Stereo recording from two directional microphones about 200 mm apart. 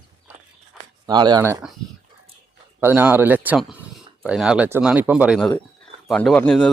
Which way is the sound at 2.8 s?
10° right (ahead or behind).